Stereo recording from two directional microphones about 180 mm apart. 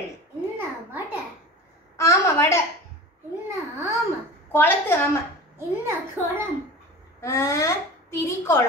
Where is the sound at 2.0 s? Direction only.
15° left (ahead or behind).